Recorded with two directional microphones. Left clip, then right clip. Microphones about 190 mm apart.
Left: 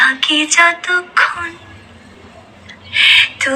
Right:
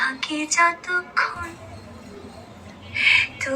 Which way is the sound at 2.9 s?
25° left (ahead or behind).